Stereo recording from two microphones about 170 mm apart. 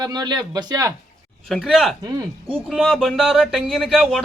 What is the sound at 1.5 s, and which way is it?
A man's voice, centre (ahead or behind).